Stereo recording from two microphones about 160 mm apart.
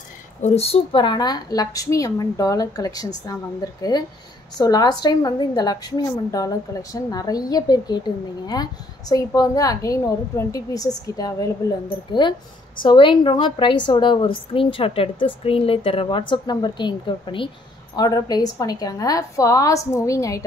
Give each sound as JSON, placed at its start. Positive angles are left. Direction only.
{"t": 0.4, "sound": "a woman's voice", "side_deg": 40}